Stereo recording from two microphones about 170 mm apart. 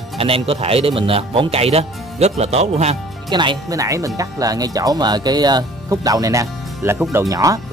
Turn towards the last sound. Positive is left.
turn(degrees=-20)  # may be behind; listen again after turning